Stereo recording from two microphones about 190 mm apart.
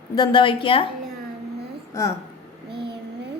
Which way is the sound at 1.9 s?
15° left (ahead or behind).